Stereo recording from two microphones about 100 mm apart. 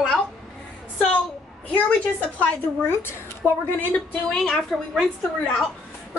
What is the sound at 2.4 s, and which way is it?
A woman's voice, 20° left (ahead or behind).